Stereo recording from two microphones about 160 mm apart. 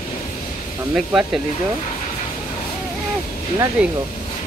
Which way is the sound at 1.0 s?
5° right (ahead or behind).